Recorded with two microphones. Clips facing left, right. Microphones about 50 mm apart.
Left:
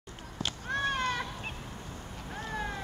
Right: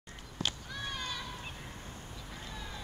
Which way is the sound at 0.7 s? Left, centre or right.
Left.